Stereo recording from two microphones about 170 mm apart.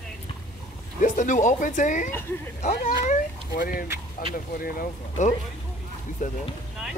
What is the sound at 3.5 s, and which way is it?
Speech, 55° left (ahead or behind).